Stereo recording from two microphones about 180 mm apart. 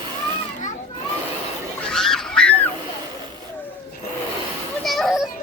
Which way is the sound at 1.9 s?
5° left (ahead or behind).